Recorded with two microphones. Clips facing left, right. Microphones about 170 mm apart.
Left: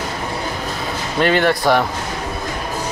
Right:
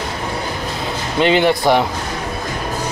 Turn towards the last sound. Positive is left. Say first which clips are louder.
# right 1 dB
turn(degrees=-15)  # may be behind; listen again after turning